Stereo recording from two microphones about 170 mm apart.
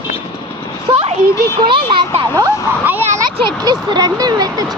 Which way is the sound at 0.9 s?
25° right (ahead or behind).